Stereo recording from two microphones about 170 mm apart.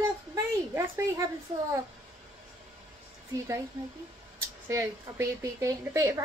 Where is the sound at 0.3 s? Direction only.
15° right (ahead or behind).